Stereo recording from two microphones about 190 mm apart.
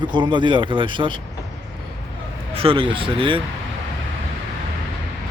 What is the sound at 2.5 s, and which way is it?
Speech, 30° right (ahead or behind).